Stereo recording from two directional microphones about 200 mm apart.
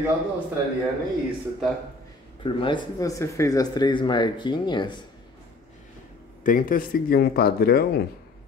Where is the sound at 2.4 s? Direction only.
25° left (ahead or behind).